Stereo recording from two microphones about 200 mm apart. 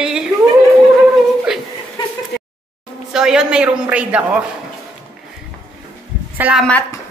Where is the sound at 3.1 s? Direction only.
5° right (ahead or behind).